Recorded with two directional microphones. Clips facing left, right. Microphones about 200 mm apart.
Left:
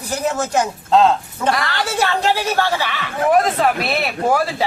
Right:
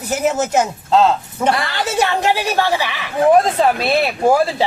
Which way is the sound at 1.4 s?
25° right (ahead or behind).